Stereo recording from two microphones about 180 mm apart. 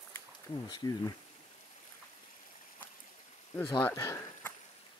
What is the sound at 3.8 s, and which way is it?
Speech, 15° left (ahead or behind).